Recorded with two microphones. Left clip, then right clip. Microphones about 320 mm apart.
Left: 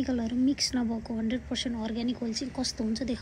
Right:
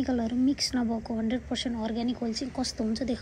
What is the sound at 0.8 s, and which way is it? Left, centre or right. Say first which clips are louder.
Speech: right 2 dB; centre.